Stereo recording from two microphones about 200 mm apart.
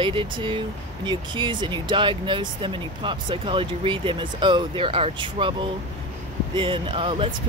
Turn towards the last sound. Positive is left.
turn(degrees=-25)  # may be behind; listen again after turning